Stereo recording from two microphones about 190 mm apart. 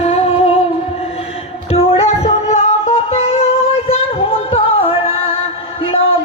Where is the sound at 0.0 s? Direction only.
35° left (ahead or behind).